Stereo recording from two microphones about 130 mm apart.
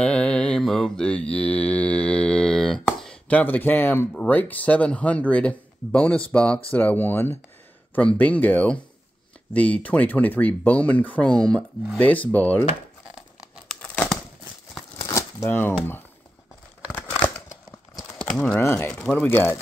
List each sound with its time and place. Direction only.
0.0 s mantra: 5° left (ahead or behind)
6.3 s speech: 10° left (ahead or behind)
15.0 s shuffling cards: 25° left (ahead or behind)
17.9 s a sound: 5° left (ahead or behind)
18.4 s speech: 20° left (ahead or behind)
18.9 s speech: 10° left (ahead or behind)